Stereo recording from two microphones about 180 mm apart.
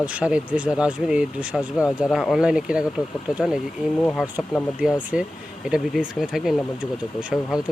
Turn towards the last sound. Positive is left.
turn(degrees=-5)  # may be behind; listen again after turning